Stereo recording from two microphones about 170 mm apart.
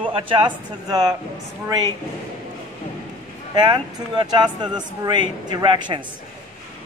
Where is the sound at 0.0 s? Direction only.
30° right (ahead or behind).